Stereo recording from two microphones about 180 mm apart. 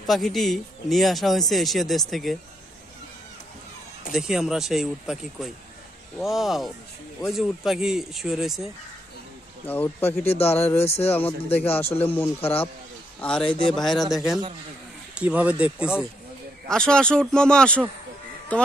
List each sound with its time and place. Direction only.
0.0 s speech: centre (ahead or behind)
4.1 s speech: centre (ahead or behind)
9.7 s speech: 10° left (ahead or behind)
10.2 s speech: 35° left (ahead or behind)
11.1 s speech: 10° left (ahead or behind); by 16.0 s 5° right (ahead or behind)
16.6 s speech: 5° left (ahead or behind)